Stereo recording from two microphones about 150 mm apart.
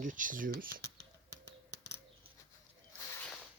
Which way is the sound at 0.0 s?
60° right (ahead or behind).